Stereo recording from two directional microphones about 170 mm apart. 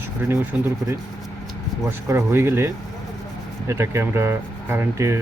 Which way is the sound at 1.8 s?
15° right (ahead or behind).